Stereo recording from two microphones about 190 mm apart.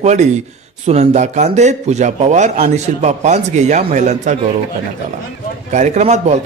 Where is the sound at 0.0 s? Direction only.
35° right (ahead or behind).